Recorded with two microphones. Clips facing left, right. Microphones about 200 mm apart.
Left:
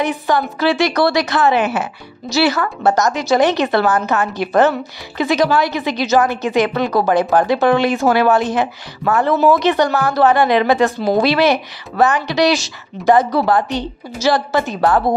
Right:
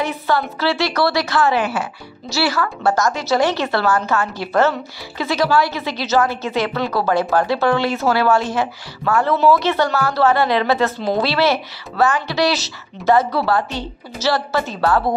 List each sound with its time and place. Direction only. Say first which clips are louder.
0.0 s a woman's voice: left 3 dB; 15° left (ahead or behind)